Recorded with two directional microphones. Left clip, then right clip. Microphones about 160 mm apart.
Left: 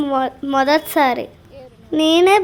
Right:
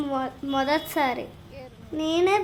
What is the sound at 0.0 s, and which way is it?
A woman's voice, 40° left (ahead or behind).